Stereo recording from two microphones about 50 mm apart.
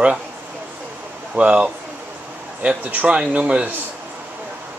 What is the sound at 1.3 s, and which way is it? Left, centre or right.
Speech, right.